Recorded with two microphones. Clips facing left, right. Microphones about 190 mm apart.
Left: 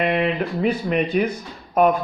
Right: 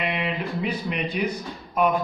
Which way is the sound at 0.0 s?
50° left (ahead or behind).